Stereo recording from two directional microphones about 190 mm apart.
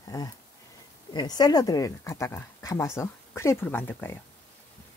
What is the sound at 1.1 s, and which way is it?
Speech, 20° left (ahead or behind).